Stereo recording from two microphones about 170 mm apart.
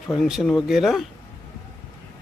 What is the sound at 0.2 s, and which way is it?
Speech, centre (ahead or behind).